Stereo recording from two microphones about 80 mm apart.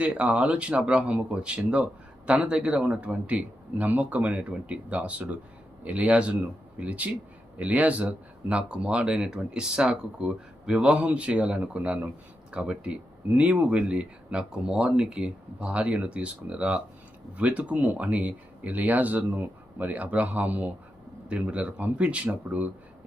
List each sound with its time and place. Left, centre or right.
0.0 s speech: centre